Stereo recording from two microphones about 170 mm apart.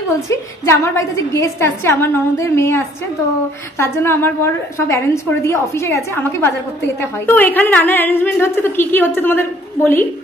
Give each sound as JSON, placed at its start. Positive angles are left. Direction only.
{"t": 0.3, "sound": "a woman's voice", "side_deg": 15}